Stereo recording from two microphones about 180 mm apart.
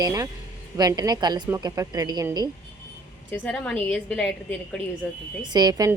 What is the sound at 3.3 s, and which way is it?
Speech, 10° left (ahead or behind).